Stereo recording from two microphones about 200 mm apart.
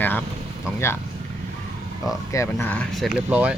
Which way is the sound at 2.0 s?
15° left (ahead or behind).